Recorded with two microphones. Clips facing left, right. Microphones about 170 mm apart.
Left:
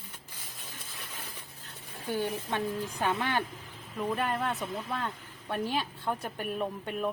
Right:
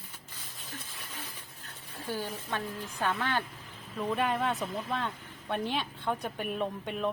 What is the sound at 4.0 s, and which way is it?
Speech, 5° left (ahead or behind).